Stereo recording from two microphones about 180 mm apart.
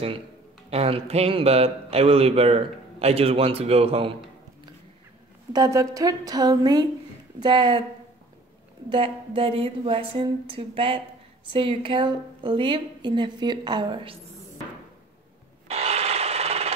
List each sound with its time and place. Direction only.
0.7 s a man's voice: 35° right (ahead or behind)
5.5 s a woman's voice: 20° right (ahead or behind)
8.8 s a woman's voice: 30° right (ahead or behind)
15.7 s wood: 35° right (ahead or behind)